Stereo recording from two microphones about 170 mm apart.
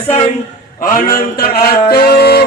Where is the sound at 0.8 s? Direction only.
60° left (ahead or behind).